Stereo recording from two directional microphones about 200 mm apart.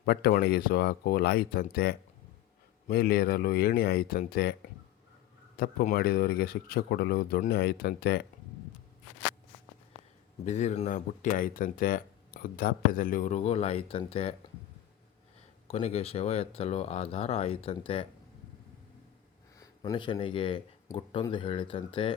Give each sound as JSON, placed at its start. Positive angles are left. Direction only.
{"t": 0.0, "sound": "speech", "side_deg": 50}
{"t": 5.5, "sound": "speech", "side_deg": 50}
{"t": 10.4, "sound": "speech", "side_deg": 35}
{"t": 15.6, "sound": "speech", "side_deg": 30}
{"t": 19.5, "sound": "speech", "side_deg": 20}